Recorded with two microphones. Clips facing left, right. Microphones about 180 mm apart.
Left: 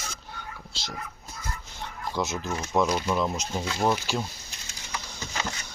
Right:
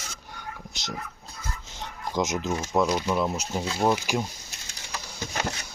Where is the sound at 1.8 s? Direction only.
15° right (ahead or behind).